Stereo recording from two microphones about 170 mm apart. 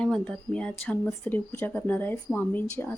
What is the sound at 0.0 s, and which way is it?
Speech, 5° left (ahead or behind).